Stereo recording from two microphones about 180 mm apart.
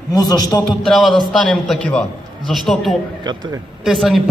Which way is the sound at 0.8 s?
Centre (ahead or behind).